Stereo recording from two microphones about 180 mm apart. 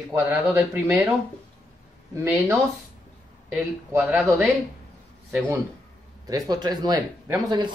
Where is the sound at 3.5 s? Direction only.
5° right (ahead or behind).